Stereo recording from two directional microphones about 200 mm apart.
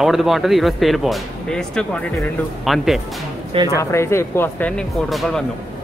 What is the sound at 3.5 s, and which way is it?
Speech, 20° right (ahead or behind).